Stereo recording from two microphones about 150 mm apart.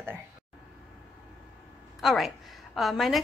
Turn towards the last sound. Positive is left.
turn(degrees=0)  # may be behind; listen again after turning